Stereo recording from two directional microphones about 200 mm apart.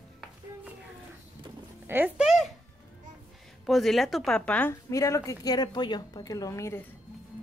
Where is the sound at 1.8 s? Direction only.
10° right (ahead or behind).